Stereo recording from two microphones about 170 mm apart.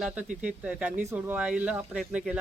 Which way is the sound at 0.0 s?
10° right (ahead or behind).